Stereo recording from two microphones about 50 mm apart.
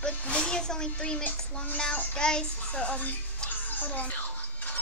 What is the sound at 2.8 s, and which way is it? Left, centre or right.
Music, left.